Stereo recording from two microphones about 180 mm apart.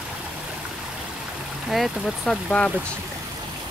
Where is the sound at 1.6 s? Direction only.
Centre (ahead or behind).